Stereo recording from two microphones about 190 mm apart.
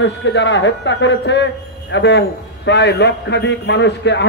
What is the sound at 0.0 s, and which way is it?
A man's voice, 70° left (ahead or behind).